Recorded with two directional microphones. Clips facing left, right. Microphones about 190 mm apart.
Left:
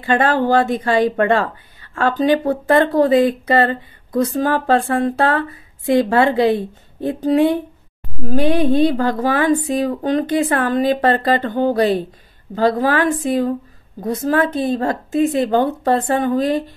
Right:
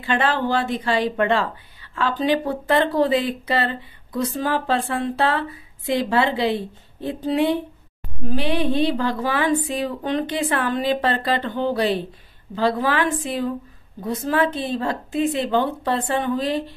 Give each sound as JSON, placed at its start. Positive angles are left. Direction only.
{"t": 0.0, "sound": "a woman's voice", "side_deg": 45}